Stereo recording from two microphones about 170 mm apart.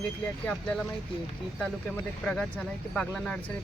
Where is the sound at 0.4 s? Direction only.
5° left (ahead or behind).